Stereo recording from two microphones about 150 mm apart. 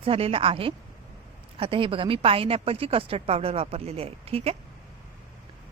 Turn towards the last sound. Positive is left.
turn(degrees=-40)  # may be behind; listen again after turning